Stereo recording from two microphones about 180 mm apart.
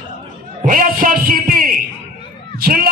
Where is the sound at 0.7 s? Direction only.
50° right (ahead or behind).